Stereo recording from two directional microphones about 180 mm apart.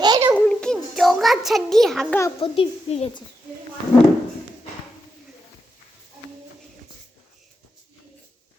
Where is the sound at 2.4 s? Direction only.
30° left (ahead or behind).